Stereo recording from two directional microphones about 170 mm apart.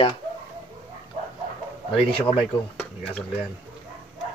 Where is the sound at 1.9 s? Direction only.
35° left (ahead or behind).